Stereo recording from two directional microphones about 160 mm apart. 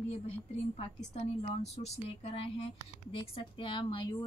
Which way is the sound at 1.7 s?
40° left (ahead or behind).